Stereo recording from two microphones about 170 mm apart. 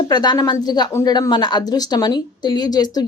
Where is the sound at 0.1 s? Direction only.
25° left (ahead or behind).